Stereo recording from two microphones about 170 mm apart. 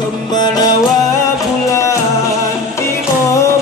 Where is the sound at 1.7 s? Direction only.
15° left (ahead or behind).